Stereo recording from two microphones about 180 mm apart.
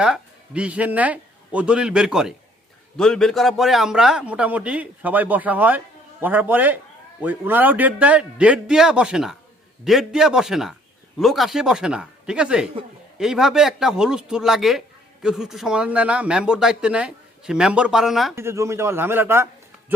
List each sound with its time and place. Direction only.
0.0 s a man's voice: 5° right (ahead or behind)
18.3 s a man's voice: 15° right (ahead or behind)